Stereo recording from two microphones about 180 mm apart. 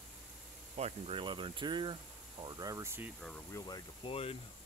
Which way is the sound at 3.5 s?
20° left (ahead or behind).